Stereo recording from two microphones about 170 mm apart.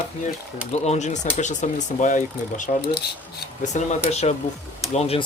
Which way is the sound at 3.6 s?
45° left (ahead or behind).